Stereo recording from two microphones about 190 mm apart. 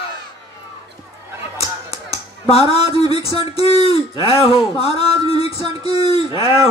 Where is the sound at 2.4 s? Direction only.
30° left (ahead or behind).